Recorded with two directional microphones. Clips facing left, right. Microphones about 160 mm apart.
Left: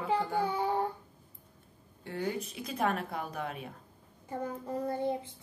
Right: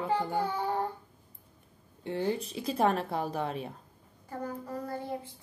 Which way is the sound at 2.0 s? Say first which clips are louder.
Right 4 dB; 25° right (ahead or behind).